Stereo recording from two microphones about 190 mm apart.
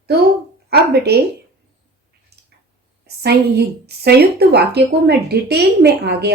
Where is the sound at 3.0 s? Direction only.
60° right (ahead or behind).